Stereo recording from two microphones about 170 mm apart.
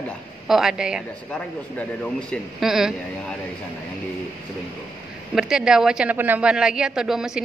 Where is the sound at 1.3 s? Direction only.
5° left (ahead or behind).